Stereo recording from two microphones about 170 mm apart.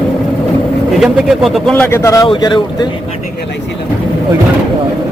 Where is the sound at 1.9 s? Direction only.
15° left (ahead or behind).